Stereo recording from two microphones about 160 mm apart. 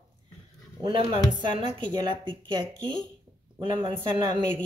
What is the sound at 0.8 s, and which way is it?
A woman's voice, 30° right (ahead or behind).